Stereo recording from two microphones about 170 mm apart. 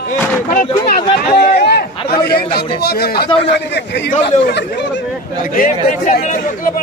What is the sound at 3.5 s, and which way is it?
A man's voice, 85° left.